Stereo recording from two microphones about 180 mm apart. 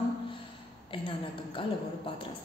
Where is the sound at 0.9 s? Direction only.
30° left (ahead or behind).